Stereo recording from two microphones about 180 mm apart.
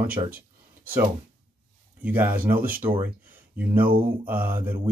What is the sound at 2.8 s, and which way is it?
Speech, 10° right (ahead or behind).